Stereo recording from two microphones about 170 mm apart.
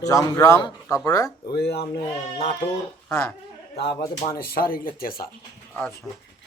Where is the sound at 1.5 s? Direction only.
75° left (ahead or behind).